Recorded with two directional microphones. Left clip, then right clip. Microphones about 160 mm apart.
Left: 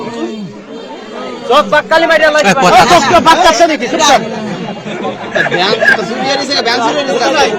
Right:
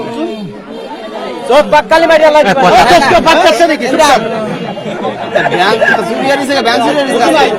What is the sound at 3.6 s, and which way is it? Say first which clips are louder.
Speech: even; 10° right (ahead or behind).